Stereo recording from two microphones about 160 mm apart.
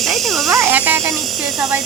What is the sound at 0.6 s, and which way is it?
Speech, 10° right (ahead or behind).